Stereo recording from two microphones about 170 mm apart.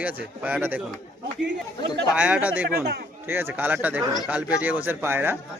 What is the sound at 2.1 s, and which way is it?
Speech, 5° right (ahead or behind).